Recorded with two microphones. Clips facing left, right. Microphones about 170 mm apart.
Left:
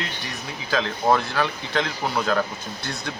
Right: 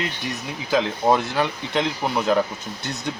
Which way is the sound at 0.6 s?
20° right (ahead or behind).